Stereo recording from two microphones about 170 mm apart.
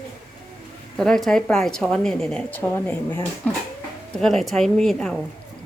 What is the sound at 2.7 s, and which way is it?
Speech, 15° left (ahead or behind).